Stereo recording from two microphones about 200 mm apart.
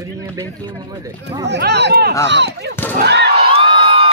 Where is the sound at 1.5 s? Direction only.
60° right (ahead or behind).